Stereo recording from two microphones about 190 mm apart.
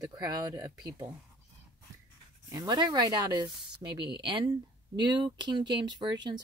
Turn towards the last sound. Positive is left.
turn(degrees=-20)  # may be behind; listen again after turning